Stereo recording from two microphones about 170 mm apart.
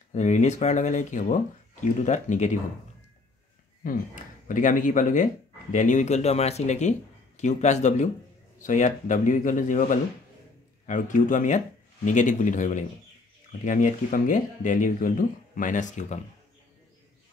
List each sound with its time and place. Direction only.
0.1 s speech: 45° left (ahead or behind)
3.8 s speech: 50° left (ahead or behind)